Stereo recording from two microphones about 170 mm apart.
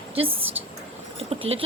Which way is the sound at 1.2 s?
35° right (ahead or behind).